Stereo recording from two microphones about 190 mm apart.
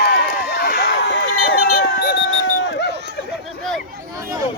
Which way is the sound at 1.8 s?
65° left (ahead or behind).